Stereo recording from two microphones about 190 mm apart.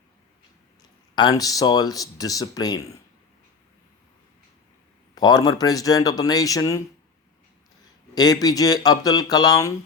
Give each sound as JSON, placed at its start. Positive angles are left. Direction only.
{"t": 1.1, "sound": "speech", "side_deg": 20}
{"t": 5.1, "sound": "speech", "side_deg": 20}
{"t": 8.1, "sound": "speech", "side_deg": 20}